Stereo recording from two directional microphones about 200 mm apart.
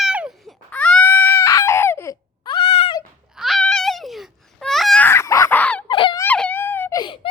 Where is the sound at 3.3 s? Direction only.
Centre (ahead or behind).